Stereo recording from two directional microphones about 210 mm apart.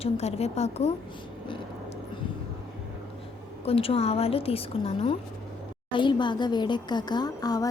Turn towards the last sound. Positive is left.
turn(degrees=15)  # may be behind; listen again after turning